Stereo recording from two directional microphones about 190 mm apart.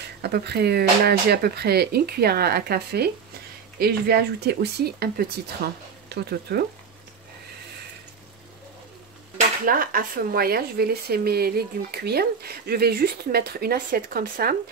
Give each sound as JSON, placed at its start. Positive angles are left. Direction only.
{"t": 0.2, "sound": "speech", "side_deg": -60}
{"t": 9.7, "sound": "speech", "side_deg": -45}